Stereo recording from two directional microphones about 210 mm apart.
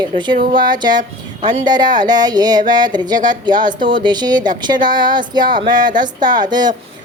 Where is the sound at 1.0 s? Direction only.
35° right (ahead or behind).